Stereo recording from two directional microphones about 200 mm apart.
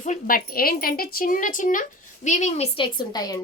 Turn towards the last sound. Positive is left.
turn(degrees=20)  # may be behind; listen again after turning